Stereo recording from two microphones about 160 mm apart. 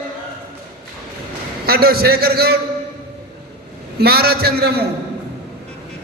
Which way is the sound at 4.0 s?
80° right.